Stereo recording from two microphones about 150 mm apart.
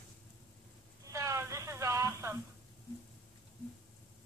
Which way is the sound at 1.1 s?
20° right (ahead or behind).